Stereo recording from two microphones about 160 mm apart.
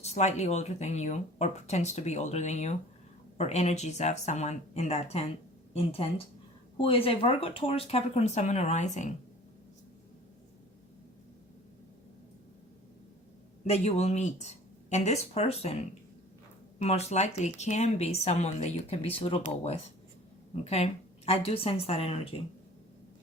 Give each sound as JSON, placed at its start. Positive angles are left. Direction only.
{"t": 0.0, "sound": "speech", "side_deg": 45}
{"t": 13.7, "sound": "speech", "side_deg": 40}
{"t": 20.7, "sound": "speech", "side_deg": 40}